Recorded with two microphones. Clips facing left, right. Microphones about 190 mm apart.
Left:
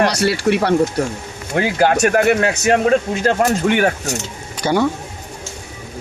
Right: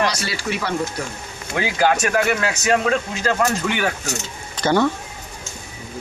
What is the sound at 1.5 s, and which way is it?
Speech, 50° left (ahead or behind).